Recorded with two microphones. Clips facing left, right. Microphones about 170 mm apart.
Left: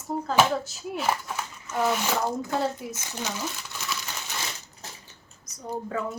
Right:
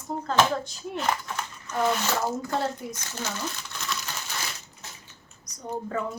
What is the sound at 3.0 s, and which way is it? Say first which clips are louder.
Speech: left 1 dB; 15° left (ahead or behind).